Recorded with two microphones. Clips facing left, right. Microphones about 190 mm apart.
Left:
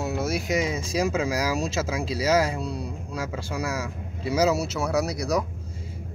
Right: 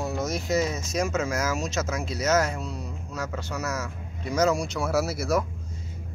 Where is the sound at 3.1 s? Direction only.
10° left (ahead or behind).